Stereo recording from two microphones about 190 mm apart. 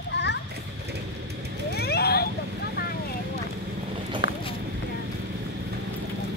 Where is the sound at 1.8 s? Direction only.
55° left (ahead or behind).